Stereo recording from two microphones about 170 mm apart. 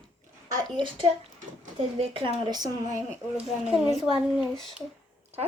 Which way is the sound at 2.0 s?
35° right (ahead or behind).